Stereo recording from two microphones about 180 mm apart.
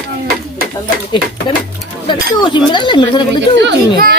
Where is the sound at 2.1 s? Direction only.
25° left (ahead or behind).